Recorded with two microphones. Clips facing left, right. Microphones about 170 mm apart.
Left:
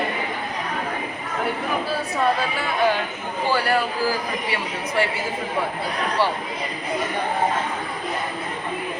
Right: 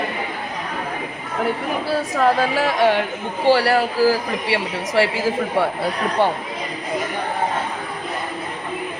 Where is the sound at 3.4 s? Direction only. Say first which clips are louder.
Right 6 dB; 80° right.